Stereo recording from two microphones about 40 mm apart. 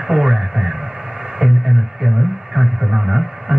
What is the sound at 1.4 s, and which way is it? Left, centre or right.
Radio, right.